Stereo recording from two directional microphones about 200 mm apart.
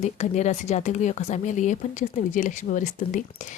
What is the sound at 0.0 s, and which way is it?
Speech, 35° left (ahead or behind).